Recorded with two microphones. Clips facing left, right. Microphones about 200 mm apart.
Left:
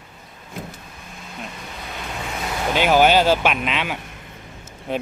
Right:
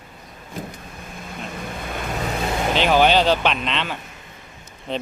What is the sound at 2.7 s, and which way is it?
Speech, 10° left (ahead or behind).